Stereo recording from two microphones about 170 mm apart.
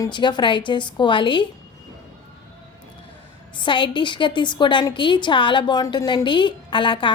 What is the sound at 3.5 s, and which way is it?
A woman's voice, 30° left (ahead or behind).